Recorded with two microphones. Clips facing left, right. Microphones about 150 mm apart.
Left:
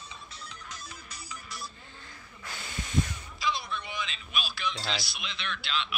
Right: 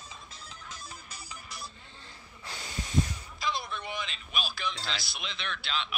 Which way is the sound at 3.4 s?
50° right (ahead or behind).